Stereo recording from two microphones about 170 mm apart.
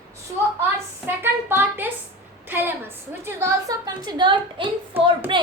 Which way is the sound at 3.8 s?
25° right (ahead or behind).